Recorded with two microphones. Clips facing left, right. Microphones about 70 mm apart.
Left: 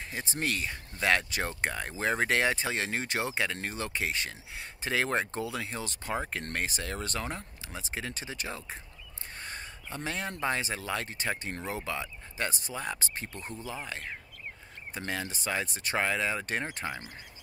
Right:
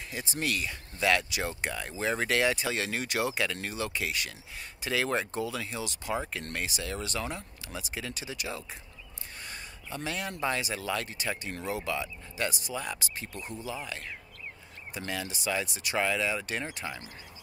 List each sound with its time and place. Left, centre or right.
0.1 s speech: left